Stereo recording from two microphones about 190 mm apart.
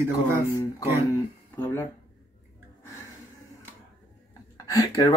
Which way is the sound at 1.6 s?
15° left (ahead or behind).